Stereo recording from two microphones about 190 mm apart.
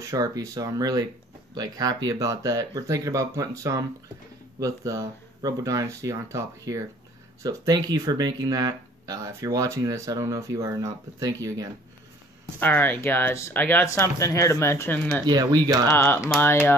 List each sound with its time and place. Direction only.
0.0 s speech: 15° right (ahead or behind)
12.5 s speech: 10° left (ahead or behind)
15.2 s speech: 20° right (ahead or behind)
15.9 s speech: 10° left (ahead or behind)